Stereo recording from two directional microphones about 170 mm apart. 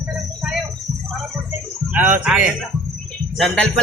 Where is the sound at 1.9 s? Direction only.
10° right (ahead or behind).